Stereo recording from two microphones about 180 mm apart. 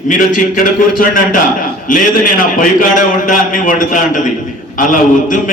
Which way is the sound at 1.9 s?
50° left (ahead or behind).